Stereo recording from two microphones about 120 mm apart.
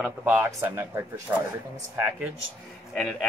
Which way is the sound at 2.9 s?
5° left (ahead or behind).